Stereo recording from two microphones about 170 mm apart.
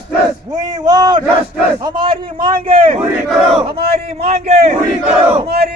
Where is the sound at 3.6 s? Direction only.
35° right (ahead or behind).